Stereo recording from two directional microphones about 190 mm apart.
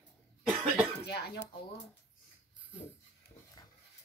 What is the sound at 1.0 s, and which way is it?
Speech, 60° left (ahead or behind).